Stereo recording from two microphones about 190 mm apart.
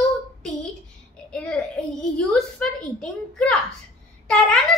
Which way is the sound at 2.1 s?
5° left (ahead or behind).